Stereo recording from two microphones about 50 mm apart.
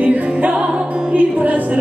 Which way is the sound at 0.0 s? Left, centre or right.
Right.